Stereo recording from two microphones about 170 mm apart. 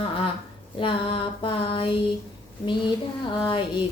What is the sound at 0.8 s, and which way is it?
Female singing, 30° left (ahead or behind).